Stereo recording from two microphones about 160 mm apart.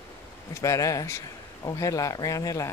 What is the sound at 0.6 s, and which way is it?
A man's voice, 20° left (ahead or behind).